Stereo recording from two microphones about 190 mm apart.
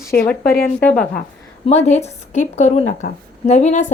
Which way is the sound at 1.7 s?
35° left (ahead or behind).